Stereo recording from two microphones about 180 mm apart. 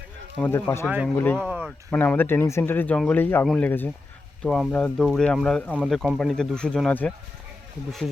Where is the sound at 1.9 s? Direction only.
10° left (ahead or behind).